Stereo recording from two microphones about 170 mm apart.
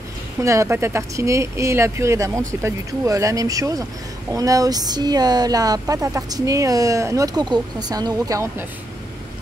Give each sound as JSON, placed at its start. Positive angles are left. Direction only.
{"t": 0.4, "sound": "speech", "side_deg": -15}